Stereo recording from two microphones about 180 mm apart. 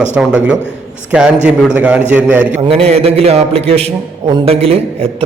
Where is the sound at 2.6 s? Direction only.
35° right (ahead or behind).